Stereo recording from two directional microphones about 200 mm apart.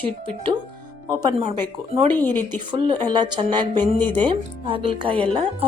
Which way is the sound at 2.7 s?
25° right (ahead or behind).